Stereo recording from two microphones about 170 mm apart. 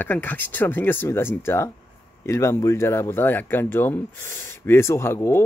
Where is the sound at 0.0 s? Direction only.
10° left (ahead or behind).